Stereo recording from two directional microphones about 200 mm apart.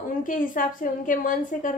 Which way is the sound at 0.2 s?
45° left (ahead or behind).